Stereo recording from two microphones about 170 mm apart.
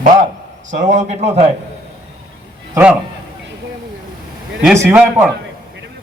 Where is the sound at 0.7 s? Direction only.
45° right (ahead or behind).